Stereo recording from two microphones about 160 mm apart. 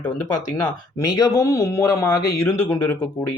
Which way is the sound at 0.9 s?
20° left (ahead or behind).